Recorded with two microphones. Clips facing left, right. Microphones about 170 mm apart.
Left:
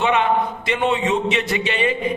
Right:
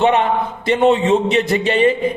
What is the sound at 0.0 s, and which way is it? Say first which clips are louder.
A man's voice: right 3 dB; 40° right (ahead or behind).